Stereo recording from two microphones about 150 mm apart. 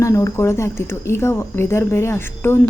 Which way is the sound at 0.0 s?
20° left (ahead or behind).